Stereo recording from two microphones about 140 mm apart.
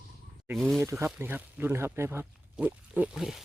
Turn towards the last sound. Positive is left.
turn(degrees=0)  # may be behind; listen again after turning